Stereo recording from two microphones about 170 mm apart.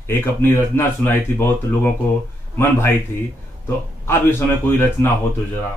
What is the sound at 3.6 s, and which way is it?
A man's voice, 15° left (ahead or behind).